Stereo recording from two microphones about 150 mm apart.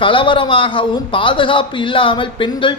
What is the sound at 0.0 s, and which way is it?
A man's voice, 35° left (ahead or behind).